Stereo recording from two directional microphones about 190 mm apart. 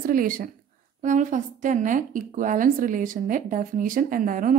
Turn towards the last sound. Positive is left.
turn(degrees=-45)  # may be behind; listen again after turning